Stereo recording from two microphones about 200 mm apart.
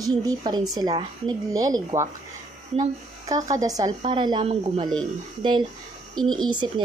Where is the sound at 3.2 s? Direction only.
20° right (ahead or behind).